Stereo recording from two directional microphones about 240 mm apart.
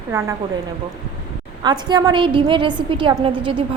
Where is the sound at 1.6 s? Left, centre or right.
Centre.